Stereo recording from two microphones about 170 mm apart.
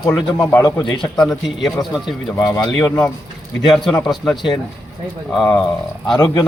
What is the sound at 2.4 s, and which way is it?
Speech, 20° left (ahead or behind).